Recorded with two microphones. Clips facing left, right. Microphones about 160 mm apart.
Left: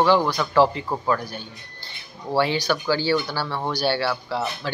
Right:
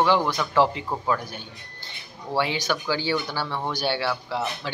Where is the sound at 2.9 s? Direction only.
20° right (ahead or behind).